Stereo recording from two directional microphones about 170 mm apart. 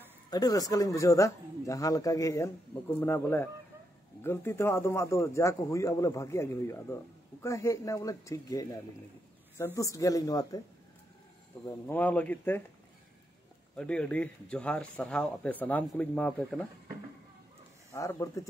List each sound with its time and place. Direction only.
0.3 s a man's voice: 20° left (ahead or behind)
9.8 s a man's voice: 20° left (ahead or behind)
11.6 s speech: 10° left (ahead or behind)
13.7 s speech: 5° left (ahead or behind)
17.9 s a man's voice: 20° left (ahead or behind)